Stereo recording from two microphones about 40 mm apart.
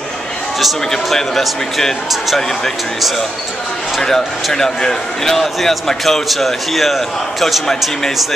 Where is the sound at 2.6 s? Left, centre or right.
Centre.